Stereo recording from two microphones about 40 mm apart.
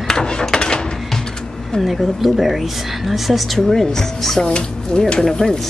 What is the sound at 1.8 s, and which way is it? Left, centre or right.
A woman's voice, centre.